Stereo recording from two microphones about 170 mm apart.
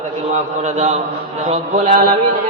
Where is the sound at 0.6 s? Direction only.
40° right (ahead or behind).